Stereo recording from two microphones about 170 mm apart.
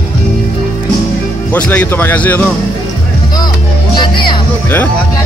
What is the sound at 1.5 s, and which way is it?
Speech, 10° left (ahead or behind).